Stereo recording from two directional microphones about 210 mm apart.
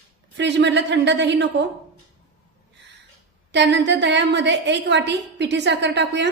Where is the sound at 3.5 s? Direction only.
55° right (ahead or behind).